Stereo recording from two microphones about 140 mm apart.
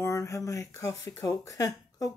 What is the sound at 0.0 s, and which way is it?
Speech, 20° left (ahead or behind).